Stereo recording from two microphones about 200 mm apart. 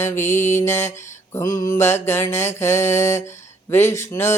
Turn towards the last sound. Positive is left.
turn(degrees=10)  # may be behind; listen again after turning